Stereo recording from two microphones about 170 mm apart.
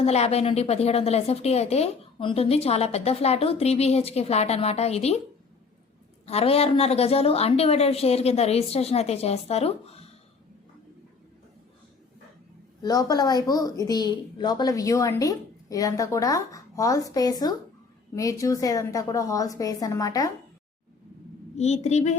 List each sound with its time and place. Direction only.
0.0 s a woman's voice: 40° left (ahead or behind)
6.2 s a woman's voice: 35° left (ahead or behind)
12.8 s a woman's voice: 20° left (ahead or behind)
21.5 s a woman's voice: 40° left (ahead or behind)